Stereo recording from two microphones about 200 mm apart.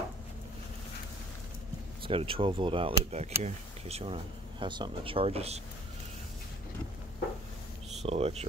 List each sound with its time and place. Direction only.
2.0 s speech: 25° right (ahead or behind)
8.0 s speech: 30° right (ahead or behind)